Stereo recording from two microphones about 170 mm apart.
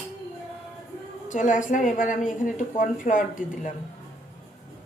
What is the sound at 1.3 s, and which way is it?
A woman's voice, 50° left (ahead or behind).